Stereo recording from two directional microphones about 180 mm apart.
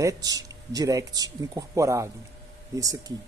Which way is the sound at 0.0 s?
20° right (ahead or behind).